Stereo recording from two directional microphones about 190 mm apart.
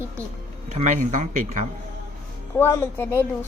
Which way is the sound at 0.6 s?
35° right (ahead or behind).